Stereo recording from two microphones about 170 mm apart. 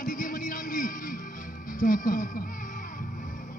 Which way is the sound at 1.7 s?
50° left (ahead or behind).